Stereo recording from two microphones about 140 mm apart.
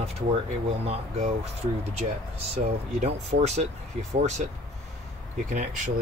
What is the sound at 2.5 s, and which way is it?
Speech, 55° right (ahead or behind).